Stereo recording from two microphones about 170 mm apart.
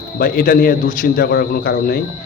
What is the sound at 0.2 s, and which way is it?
A man's voice, 60° left (ahead or behind).